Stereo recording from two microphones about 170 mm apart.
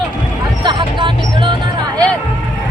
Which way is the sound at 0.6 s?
30° right (ahead or behind).